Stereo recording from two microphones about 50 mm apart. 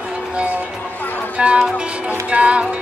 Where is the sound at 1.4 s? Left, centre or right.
Right.